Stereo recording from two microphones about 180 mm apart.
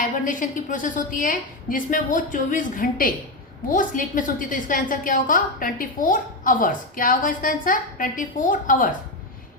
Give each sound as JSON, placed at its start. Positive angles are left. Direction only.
{"t": 0.0, "sound": "a woman's voice", "side_deg": 50}